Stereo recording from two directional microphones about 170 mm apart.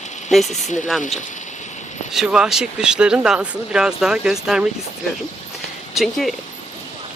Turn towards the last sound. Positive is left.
turn(degrees=0)  # may be behind; listen again after turning